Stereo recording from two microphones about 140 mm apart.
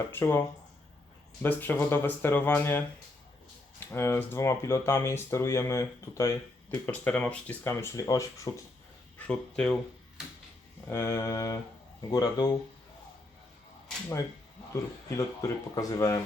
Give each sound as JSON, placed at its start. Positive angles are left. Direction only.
{"t": 0.1, "sound": "speech", "side_deg": 15}
{"t": 3.9, "sound": "speech", "side_deg": 20}
{"t": 6.8, "sound": "speech", "side_deg": 10}
{"t": 9.1, "sound": "speech", "side_deg": 10}
{"t": 10.8, "sound": "speech", "side_deg": 20}
{"t": 14.7, "sound": "speech", "side_deg": 25}